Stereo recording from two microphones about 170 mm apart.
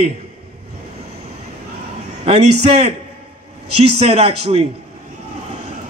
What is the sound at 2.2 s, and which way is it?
Speech, 40° right (ahead or behind).